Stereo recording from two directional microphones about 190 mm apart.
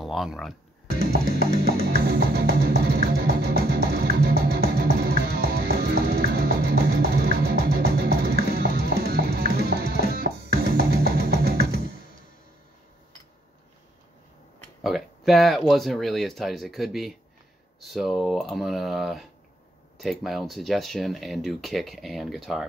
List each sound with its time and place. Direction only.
0.0 s speech: centre (ahead or behind)
1.2 s music: 45° left (ahead or behind)
1.6 s music: 55° right (ahead or behind)
14.8 s speech: centre (ahead or behind)